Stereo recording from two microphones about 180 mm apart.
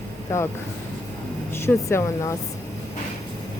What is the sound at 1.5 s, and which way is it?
Speech, 15° left (ahead or behind).